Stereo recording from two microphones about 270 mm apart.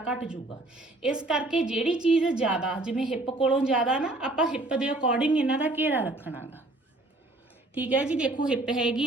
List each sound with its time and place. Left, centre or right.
0.8 s a woman's voice: centre
7.8 s a woman's voice: centre